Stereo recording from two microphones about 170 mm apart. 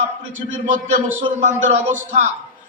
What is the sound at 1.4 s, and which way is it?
Speech, 45° right (ahead or behind).